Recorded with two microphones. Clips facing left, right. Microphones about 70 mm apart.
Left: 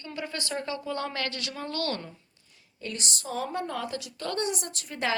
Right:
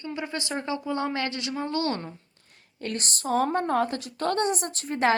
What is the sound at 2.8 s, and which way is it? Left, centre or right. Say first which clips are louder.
A woman's voice: right 5 dB; right.